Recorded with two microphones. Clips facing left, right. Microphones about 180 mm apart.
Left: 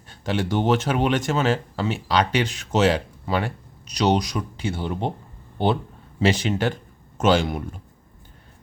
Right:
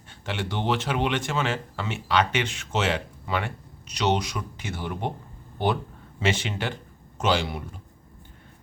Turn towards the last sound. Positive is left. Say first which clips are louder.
# left 5 dB
turn(degrees=50)  # may be behind; listen again after turning